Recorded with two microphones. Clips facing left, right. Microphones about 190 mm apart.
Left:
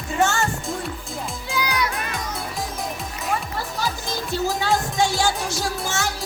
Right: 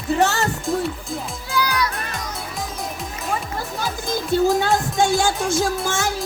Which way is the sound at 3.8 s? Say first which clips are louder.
Right 3 dB; 55° right (ahead or behind).